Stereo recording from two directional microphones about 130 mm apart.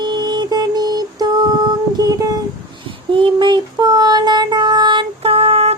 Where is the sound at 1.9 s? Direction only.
30° right (ahead or behind).